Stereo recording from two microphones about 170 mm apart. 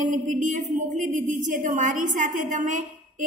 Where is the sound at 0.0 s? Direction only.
50° right (ahead or behind).